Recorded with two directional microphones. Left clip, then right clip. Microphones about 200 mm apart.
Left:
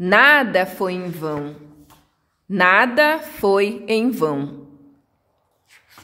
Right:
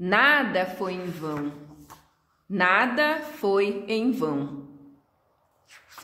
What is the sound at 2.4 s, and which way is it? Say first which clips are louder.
Speech: left 7 dB; 55° left (ahead or behind).